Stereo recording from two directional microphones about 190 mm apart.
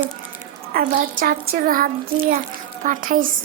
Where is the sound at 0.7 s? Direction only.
50° right (ahead or behind).